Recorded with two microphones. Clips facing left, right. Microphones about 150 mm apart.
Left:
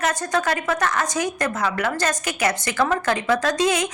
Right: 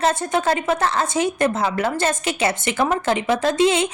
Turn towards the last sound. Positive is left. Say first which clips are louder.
# right 3 dB
turn(degrees=-25)  # may be behind; listen again after turning